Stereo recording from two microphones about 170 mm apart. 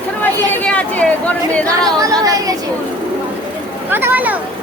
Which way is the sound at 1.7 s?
20° right (ahead or behind).